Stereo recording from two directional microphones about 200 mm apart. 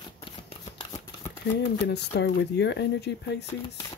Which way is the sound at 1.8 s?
60° left (ahead or behind).